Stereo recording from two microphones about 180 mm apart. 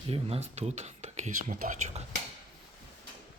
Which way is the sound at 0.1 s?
35° right (ahead or behind).